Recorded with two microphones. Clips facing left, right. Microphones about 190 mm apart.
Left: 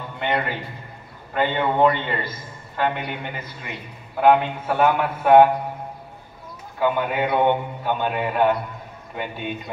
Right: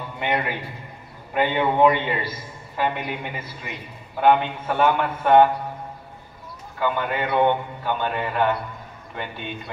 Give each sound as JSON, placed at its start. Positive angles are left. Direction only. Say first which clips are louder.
{"t": 0.2, "sound": "a man's voice", "louder": "left 1 dB", "side_deg": -10}
{"t": 6.8, "sound": "a man's voice", "louder": "left 3 dB", "side_deg": 10}